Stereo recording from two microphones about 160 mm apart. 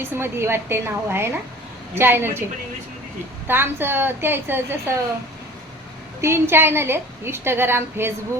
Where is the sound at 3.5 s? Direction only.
15° right (ahead or behind).